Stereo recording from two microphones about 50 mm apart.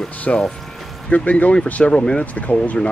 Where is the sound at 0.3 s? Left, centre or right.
Left.